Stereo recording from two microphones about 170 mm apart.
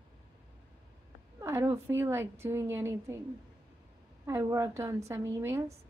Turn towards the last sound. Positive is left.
turn(degrees=-15)  # may be behind; listen again after turning